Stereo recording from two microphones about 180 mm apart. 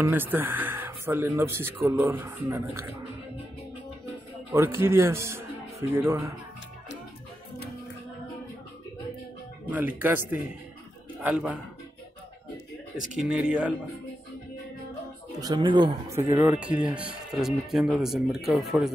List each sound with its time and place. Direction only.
0.0 s speech: 10° right (ahead or behind)
4.5 s speech: 15° right (ahead or behind)
9.7 s a man's voice: 10° right (ahead or behind)
13.1 s speech: 5° right (ahead or behind)
15.4 s speech: 25° right (ahead or behind)
16.3 s speech: 15° right (ahead or behind)